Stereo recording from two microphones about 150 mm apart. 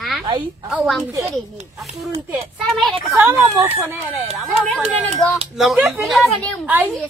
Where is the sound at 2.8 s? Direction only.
Centre (ahead or behind).